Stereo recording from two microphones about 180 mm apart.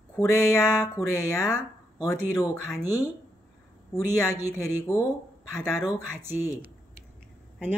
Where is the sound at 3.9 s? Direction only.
15° left (ahead or behind).